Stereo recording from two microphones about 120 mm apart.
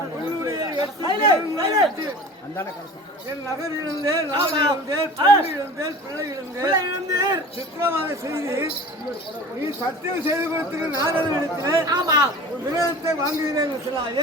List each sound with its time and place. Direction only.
0.4 s chatter: 30° right (ahead or behind)
1.0 s a man's voice: 35° right (ahead or behind)
4.0 s a man's voice: 35° right (ahead or behind)
10.2 s a man's voice: 20° right (ahead or behind)